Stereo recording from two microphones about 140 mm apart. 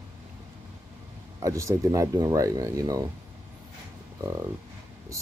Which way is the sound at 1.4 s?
20° right (ahead or behind).